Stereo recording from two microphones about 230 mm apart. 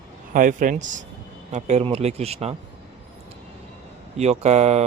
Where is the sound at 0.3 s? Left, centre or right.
Right.